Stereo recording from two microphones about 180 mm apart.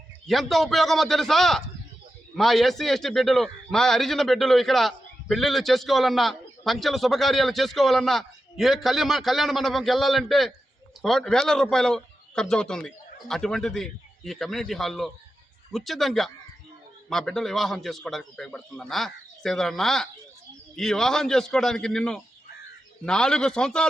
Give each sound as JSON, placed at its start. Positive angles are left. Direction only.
{"t": 0.3, "sound": "a man's voice", "side_deg": 0}